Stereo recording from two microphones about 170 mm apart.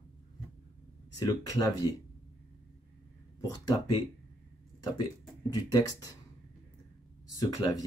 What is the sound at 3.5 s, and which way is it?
Speech, 25° left (ahead or behind).